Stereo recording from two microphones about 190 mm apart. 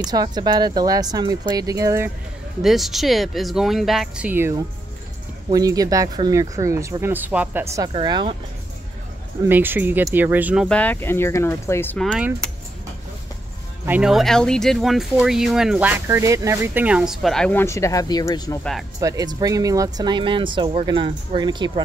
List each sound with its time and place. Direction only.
0.0 s speech: 20° right (ahead or behind)
2.6 s speech: centre (ahead or behind)
7.7 s speech: 20° right (ahead or behind)
9.5 s speech: 10° right (ahead or behind)
10.8 s speech: 10° left (ahead or behind)
12.4 s keys jangling: 5° left (ahead or behind)
13.8 s speech: 5° right (ahead or behind); by 18.6 s 20° left (ahead or behind)
18.6 s speech: centre (ahead or behind)
18.9 s speech: 20° right (ahead or behind)